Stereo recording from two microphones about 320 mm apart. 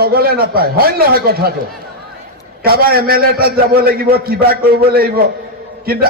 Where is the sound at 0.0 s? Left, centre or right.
Right.